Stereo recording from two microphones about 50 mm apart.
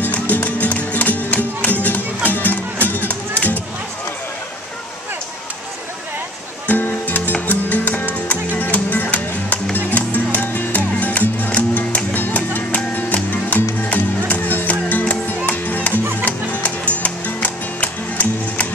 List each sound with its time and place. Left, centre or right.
0.0 s music: left
6.7 s music: left